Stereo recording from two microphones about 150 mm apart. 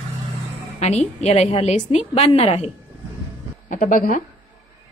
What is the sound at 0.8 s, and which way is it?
A woman's voice, 45° left (ahead or behind).